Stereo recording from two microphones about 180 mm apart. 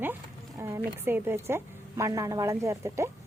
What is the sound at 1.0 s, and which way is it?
Speech, 10° right (ahead or behind).